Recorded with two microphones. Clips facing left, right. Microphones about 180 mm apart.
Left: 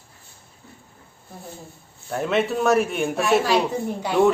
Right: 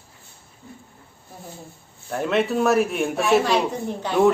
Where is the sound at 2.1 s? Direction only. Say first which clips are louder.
Even; centre (ahead or behind).